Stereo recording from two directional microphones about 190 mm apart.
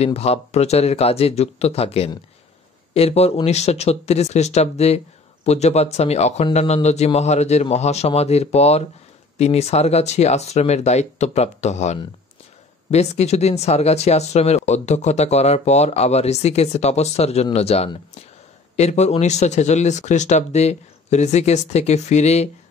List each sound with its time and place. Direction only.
0.0 s speech: 35° left (ahead or behind)